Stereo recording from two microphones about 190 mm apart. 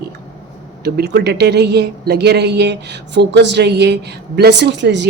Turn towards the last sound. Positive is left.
turn(degrees=-65)  # may be behind; listen again after turning